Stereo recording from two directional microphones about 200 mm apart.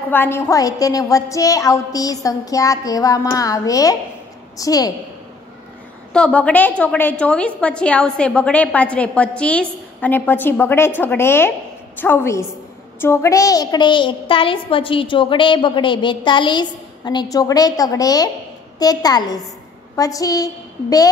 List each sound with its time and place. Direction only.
0.1 s a woman's voice: 10° left (ahead or behind)
6.1 s a woman's voice: 5° left (ahead or behind)